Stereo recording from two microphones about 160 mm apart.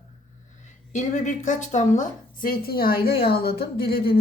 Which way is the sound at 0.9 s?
50° left (ahead or behind).